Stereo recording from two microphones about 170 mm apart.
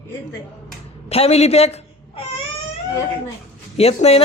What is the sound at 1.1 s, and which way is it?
A man's voice, 35° left (ahead or behind).